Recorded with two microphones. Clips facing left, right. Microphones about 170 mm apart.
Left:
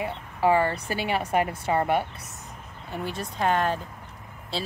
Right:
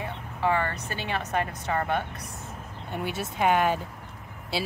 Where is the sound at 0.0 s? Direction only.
15° left (ahead or behind).